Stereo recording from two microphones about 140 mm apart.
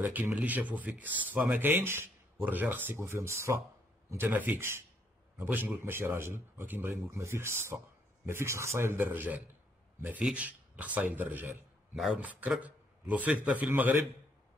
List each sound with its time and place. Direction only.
0.0 s speech: 10° right (ahead or behind)
11.9 s speech: centre (ahead or behind)